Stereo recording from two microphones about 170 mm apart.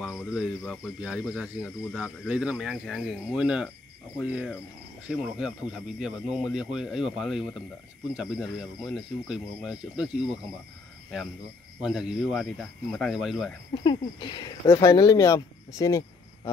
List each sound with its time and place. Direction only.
0.0 s speech: centre (ahead or behind)
4.2 s cricket: 5° right (ahead or behind)
5.0 s speech: 5° right (ahead or behind)
11.8 s speech: 5° right (ahead or behind)
13.8 s speech: 25° left (ahead or behind)